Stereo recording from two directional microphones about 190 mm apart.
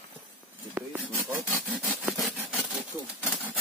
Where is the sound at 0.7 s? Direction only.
10° right (ahead or behind).